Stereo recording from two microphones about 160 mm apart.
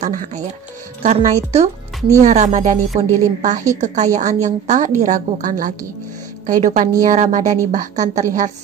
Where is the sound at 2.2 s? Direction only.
45° right (ahead or behind).